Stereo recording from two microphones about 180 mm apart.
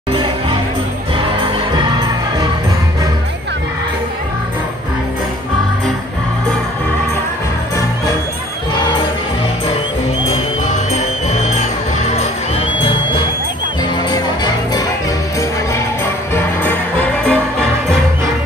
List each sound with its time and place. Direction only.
0.1 s music: 30° right (ahead or behind)
10.9 s music: 40° left (ahead or behind); by 14.8 s 20° left (ahead or behind)
16.3 s music: 10° left (ahead or behind)